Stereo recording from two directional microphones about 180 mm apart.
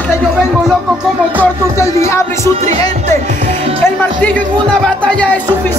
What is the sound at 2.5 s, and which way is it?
Music, 40° right (ahead or behind).